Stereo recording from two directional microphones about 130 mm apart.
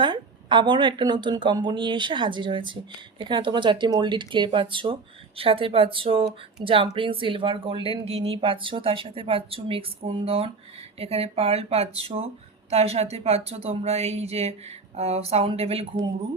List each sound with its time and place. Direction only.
0.0 s speech: 35° right (ahead or behind)